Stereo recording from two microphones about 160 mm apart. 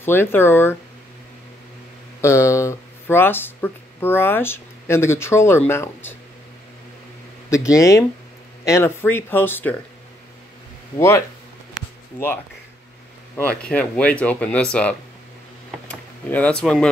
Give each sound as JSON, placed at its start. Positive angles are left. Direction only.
{"t": 0.0, "sound": "speech", "side_deg": 15}
{"t": 2.2, "sound": "speech", "side_deg": 20}
{"t": 7.4, "sound": "speech", "side_deg": 20}
{"t": 11.0, "sound": "speech", "side_deg": 15}
{"t": 13.7, "sound": "speech", "side_deg": 10}